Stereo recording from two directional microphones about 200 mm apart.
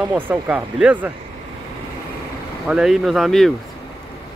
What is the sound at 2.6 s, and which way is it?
Speech, 5° right (ahead or behind).